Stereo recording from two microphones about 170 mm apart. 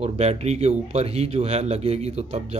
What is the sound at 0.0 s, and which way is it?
Speech, 40° right (ahead or behind).